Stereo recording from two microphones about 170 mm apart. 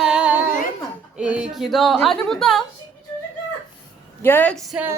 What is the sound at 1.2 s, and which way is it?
A woman's voice, 5° right (ahead or behind).